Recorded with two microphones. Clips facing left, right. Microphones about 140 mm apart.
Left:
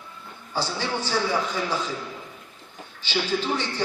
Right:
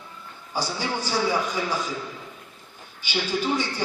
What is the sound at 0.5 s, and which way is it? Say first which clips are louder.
A man's voice: even; 10° right (ahead or behind).